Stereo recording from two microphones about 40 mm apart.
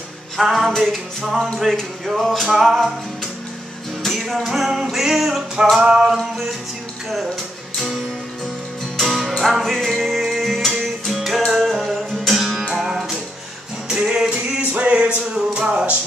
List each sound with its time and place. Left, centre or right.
0.4 s music: centre
4.2 s music: centre
5.8 s music: right
9.0 s music: centre
12.7 s music: centre